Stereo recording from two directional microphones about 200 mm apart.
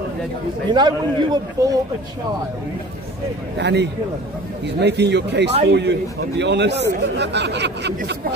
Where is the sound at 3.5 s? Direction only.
60° right (ahead or behind).